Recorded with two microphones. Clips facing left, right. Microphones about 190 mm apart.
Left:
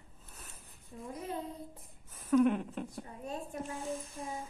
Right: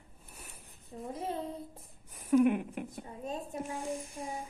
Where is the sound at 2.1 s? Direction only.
15° right (ahead or behind).